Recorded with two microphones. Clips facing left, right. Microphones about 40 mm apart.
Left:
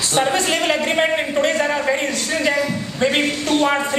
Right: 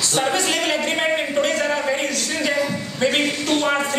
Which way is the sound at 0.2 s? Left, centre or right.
Centre.